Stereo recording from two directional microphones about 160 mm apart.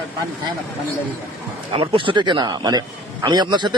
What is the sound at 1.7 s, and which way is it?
Speech, 35° right (ahead or behind).